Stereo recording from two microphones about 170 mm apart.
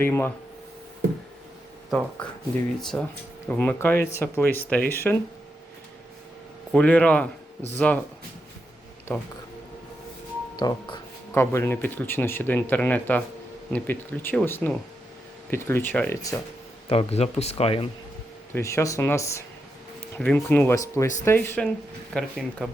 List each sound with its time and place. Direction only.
0.0 s speech: 15° left (ahead or behind)
2.9 s speech: 5° left (ahead or behind)
6.7 s speech: 5° left (ahead or behind)
9.1 s speech: 10° left (ahead or behind)
10.6 s speech: 25° left (ahead or behind)
11.3 s speech: 15° left (ahead or behind)
16.9 s speech: 35° left (ahead or behind)
18.5 s speech: 15° left (ahead or behind)